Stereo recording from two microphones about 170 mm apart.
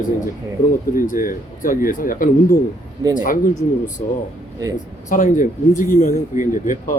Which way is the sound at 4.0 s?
50° left (ahead or behind).